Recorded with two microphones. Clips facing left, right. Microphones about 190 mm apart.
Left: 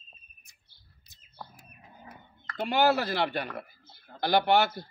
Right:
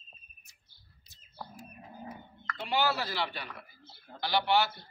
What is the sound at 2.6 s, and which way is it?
A man's voice, 50° left (ahead or behind).